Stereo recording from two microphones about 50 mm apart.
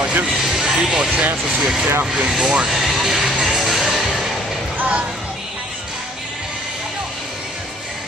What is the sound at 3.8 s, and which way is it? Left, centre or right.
Music, centre.